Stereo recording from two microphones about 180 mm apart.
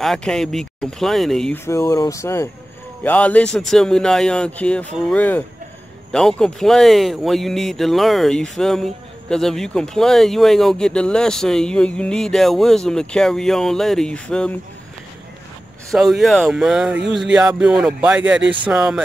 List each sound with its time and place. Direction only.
0.0 s speech: centre (ahead or behind)
1.7 s speech: 15° left (ahead or behind)
15.9 s speech: centre (ahead or behind)